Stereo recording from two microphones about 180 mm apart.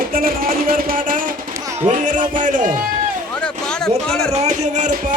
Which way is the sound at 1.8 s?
45° right (ahead or behind).